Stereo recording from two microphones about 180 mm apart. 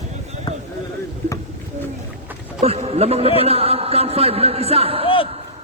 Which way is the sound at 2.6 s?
35° right (ahead or behind).